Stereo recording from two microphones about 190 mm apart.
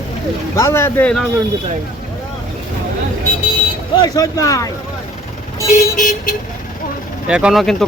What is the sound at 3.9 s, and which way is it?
Speech, 20° left (ahead or behind).